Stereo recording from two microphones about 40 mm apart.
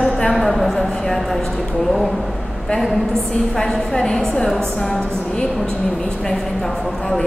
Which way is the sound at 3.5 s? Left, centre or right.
Centre.